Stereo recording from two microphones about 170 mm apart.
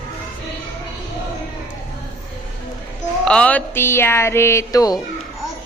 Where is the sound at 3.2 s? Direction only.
5° left (ahead or behind).